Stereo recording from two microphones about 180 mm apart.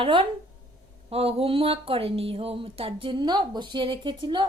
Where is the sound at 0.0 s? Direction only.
30° right (ahead or behind).